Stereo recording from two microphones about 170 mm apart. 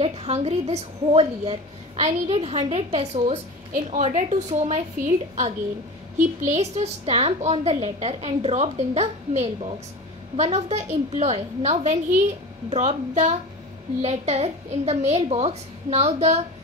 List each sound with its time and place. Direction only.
0.0 s a woman's voice: 35° right (ahead or behind)
6.1 s a woman's voice: 40° right (ahead or behind)